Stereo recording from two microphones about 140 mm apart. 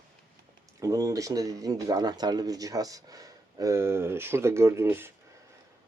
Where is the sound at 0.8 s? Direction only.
20° right (ahead or behind).